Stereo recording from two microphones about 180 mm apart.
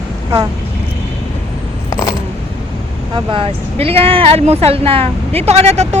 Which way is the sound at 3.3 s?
30° right (ahead or behind).